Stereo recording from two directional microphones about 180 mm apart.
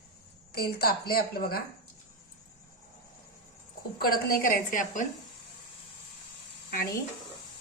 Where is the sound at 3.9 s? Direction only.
55° left (ahead or behind).